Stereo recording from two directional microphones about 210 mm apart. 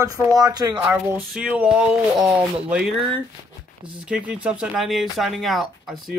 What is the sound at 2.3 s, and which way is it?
Speech, 5° right (ahead or behind).